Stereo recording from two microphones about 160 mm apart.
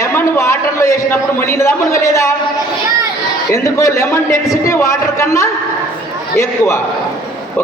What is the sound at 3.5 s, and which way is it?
A man's voice, 20° left (ahead or behind).